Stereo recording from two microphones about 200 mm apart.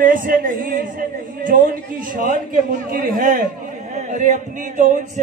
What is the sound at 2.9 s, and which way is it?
A man's voice, 45° right (ahead or behind).